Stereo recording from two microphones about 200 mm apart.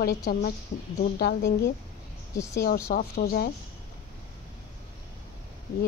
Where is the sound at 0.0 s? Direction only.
50° left (ahead or behind).